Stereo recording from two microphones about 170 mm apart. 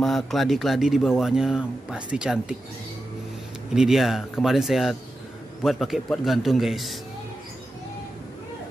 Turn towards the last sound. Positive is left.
turn(degrees=0)  # may be behind; listen again after turning